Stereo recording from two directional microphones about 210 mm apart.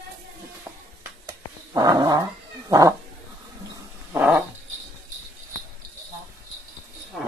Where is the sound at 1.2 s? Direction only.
15° right (ahead or behind).